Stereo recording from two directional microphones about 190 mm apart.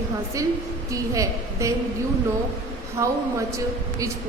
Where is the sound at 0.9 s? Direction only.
15° right (ahead or behind).